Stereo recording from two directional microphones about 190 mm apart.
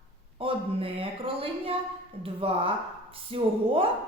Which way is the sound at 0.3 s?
30° right (ahead or behind).